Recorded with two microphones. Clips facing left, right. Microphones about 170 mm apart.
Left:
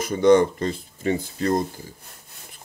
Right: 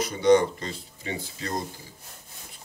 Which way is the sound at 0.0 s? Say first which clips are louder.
Left 3 dB; 50° left (ahead or behind).